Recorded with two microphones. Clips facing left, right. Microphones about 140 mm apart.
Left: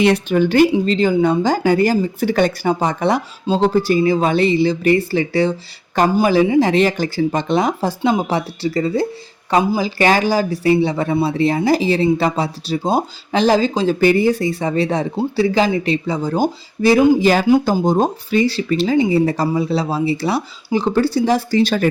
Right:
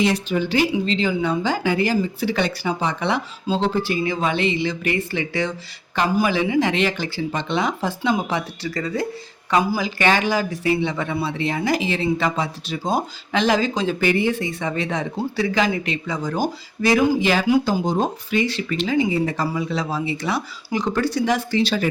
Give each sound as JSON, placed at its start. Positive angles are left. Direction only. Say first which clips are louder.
{"t": 0.0, "sound": "speech", "louder": "left 6 dB", "side_deg": 60}
{"t": 21.6, "sound": "speech", "louder": "left 5 dB", "side_deg": 50}